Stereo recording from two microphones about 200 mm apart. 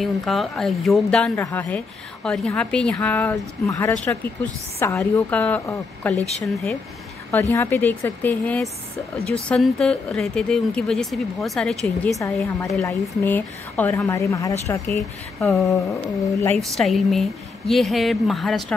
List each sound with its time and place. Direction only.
0.0 s a woman's voice: centre (ahead or behind)
12.2 s a woman's voice: 15° left (ahead or behind)
16.5 s a woman's voice: centre (ahead or behind)